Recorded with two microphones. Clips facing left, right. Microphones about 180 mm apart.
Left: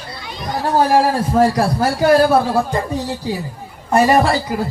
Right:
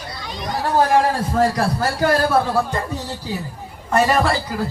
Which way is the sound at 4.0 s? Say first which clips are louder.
Left 4 dB; 20° left (ahead or behind).